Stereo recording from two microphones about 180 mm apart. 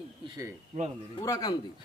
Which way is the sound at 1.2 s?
20° left (ahead or behind).